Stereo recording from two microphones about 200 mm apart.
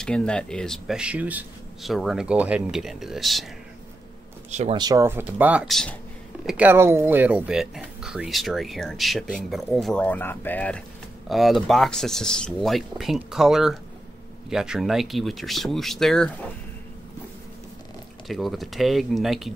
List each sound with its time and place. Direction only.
0.0 s speech: 5° left (ahead or behind)
4.5 s speech: 35° right (ahead or behind)
4.7 s speech: 15° right (ahead or behind); by 16.3 s centre (ahead or behind)
18.2 s speech: centre (ahead or behind)